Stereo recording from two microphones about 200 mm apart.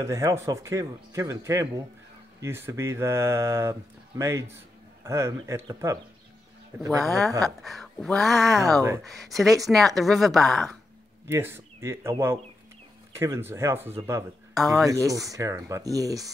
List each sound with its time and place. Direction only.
0.0 s speech: 15° right (ahead or behind)
7.1 s speech: centre (ahead or behind)
8.8 s speech: 15° right (ahead or behind)
9.1 s speech: centre (ahead or behind)
11.2 s speech: 15° right (ahead or behind)